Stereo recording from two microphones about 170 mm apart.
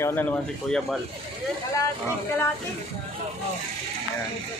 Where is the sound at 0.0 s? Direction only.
10° left (ahead or behind).